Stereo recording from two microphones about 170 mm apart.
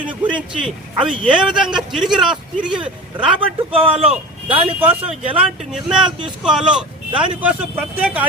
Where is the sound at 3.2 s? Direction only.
30° right (ahead or behind).